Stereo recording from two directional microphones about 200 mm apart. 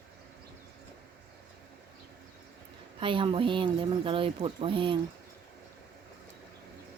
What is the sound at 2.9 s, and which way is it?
Speech, 25° right (ahead or behind).